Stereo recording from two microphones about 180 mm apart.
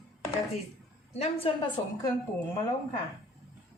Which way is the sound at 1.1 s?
35° left (ahead or behind).